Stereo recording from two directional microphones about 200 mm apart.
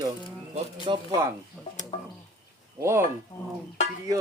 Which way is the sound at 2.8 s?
15° right (ahead or behind).